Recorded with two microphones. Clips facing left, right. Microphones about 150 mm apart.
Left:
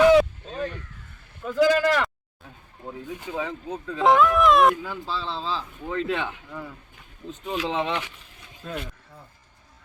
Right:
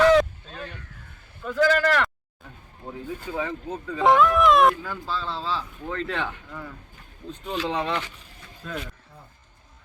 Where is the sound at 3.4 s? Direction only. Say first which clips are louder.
Even; centre (ahead or behind).